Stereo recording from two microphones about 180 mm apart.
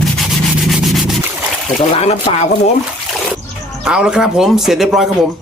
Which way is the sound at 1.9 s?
35° left (ahead or behind).